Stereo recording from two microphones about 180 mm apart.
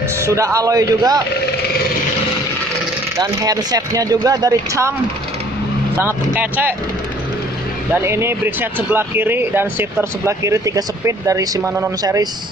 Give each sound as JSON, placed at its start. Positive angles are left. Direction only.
{"t": 0.2, "sound": "speech", "side_deg": -15}
{"t": 3.2, "sound": "speech", "side_deg": -20}
{"t": 5.9, "sound": "speech", "side_deg": -10}
{"t": 7.9, "sound": "speech", "side_deg": -15}